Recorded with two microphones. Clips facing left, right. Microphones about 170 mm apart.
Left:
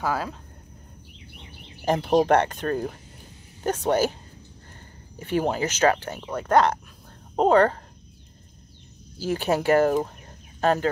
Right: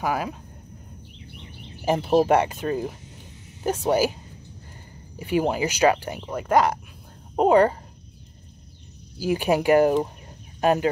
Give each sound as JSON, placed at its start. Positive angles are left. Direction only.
{"t": 0.0, "sound": "speech", "side_deg": -15}
{"t": 1.9, "sound": "speech", "side_deg": -5}
{"t": 5.2, "sound": "speech", "side_deg": -10}
{"t": 9.2, "sound": "speech", "side_deg": -10}